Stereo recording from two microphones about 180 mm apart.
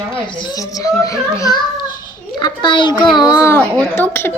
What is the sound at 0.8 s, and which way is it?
A child's voice, 20° left (ahead or behind).